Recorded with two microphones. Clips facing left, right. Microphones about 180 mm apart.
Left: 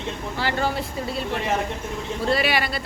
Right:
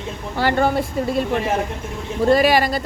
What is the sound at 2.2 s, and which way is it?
Speech, 45° right (ahead or behind).